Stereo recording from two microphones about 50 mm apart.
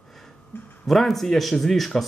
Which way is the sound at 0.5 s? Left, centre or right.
Left.